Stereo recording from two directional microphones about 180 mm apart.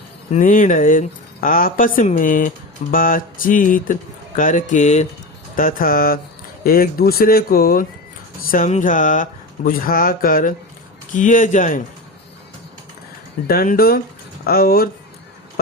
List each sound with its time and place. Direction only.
0.3 s speech: 45° left (ahead or behind)
5.5 s speech: 50° left (ahead or behind)
13.5 s speech: 55° left (ahead or behind)